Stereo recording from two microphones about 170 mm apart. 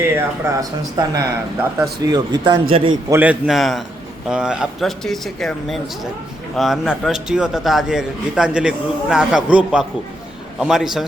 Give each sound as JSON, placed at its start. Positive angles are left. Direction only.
{"t": 0.0, "sound": "speech", "side_deg": -20}
{"t": 3.1, "sound": "a man's voice", "side_deg": -10}